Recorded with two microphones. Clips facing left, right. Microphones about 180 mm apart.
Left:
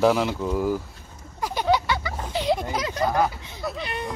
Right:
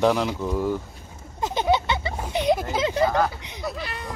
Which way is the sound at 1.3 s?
25° right (ahead or behind).